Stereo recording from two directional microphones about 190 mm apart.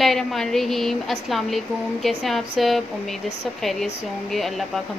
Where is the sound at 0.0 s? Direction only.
Centre (ahead or behind).